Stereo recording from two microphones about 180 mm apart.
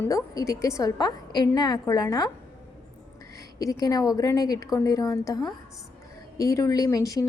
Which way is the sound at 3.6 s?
20° left (ahead or behind).